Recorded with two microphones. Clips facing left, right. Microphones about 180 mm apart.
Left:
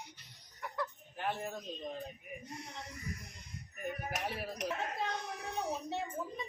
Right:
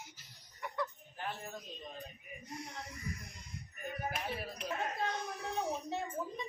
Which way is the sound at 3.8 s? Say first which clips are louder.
Left 1 dB; 80° left.